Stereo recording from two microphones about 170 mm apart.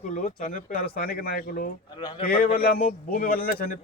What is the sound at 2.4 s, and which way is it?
Speech, 60° left (ahead or behind).